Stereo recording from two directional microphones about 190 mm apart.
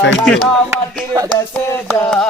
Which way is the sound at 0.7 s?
15° right (ahead or behind).